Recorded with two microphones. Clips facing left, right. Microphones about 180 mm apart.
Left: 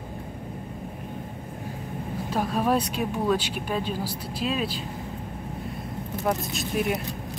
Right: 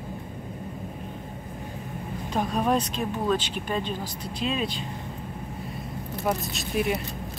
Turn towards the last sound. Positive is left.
turn(degrees=0)  # may be behind; listen again after turning